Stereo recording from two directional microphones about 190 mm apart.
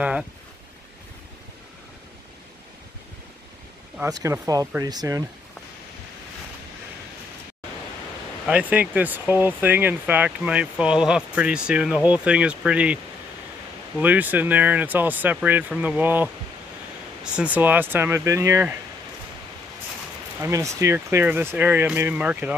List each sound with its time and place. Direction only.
0.0 s speech: 5° right (ahead or behind)
4.0 s speech: 15° right (ahead or behind)
8.5 s speech: 5° right (ahead or behind)
20.4 s speech: 15° right (ahead or behind)